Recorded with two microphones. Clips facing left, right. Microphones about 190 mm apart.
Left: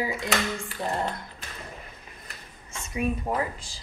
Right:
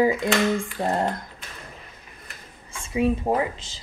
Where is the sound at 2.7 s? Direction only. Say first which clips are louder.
Right 6 dB; 30° right (ahead or behind).